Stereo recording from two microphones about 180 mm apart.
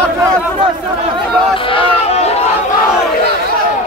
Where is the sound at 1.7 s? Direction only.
35° left (ahead or behind).